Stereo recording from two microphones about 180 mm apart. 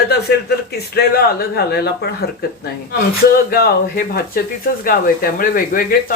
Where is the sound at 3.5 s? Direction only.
60° left (ahead or behind).